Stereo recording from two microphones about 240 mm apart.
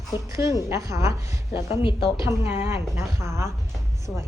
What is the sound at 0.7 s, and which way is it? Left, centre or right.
Speech, centre.